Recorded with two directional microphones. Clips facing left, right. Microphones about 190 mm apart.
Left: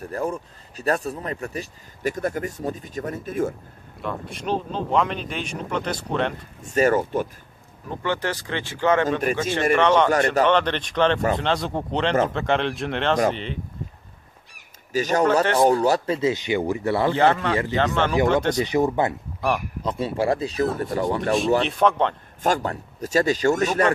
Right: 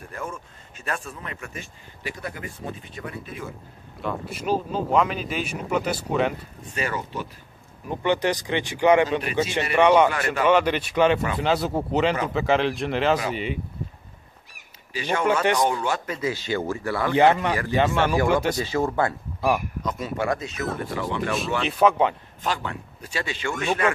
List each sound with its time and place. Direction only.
0.0 s speech: 35° left (ahead or behind)
4.0 s speech: 5° right (ahead or behind)
6.6 s speech: 45° left (ahead or behind)
7.9 s speech: 15° right (ahead or behind)
9.2 s speech: 45° left (ahead or behind)
9.8 s speech: 10° right (ahead or behind)
14.9 s speech: 40° left (ahead or behind); by 17.1 s 25° left (ahead or behind)
17.1 s speech: 15° right (ahead or behind)
18.6 s speech: 20° left (ahead or behind)
19.8 s speech: 30° left (ahead or behind)
21.6 s speech: 5° right (ahead or behind)
22.4 s speech: 40° left (ahead or behind)